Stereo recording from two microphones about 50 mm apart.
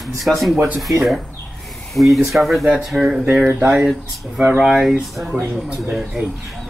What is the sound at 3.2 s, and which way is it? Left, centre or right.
Speech, right.